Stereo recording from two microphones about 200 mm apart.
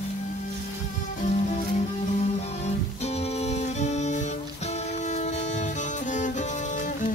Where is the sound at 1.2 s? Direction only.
40° left (ahead or behind).